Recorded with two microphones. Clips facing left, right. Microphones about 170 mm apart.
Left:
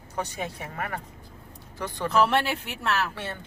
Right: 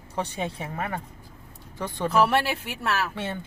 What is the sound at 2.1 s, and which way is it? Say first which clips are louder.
Speech: right 1 dB; 10° right (ahead or behind).